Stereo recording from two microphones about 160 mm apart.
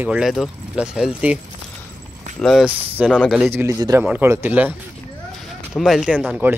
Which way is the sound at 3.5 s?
15° right (ahead or behind).